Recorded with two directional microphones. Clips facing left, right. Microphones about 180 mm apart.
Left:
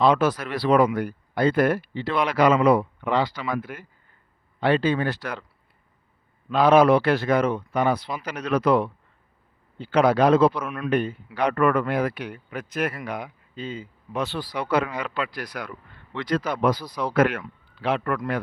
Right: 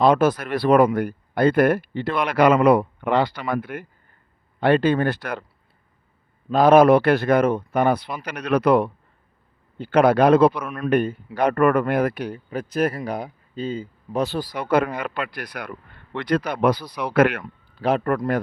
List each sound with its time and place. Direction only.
0.0 s speech: 45° right (ahead or behind)
6.5 s speech: 45° right (ahead or behind)
12.2 s speech: 35° right (ahead or behind); by 17.4 s 70° right (ahead or behind)
17.4 s speech: 40° right (ahead or behind)